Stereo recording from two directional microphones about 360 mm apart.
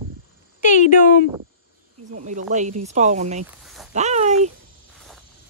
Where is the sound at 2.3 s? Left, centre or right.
Centre.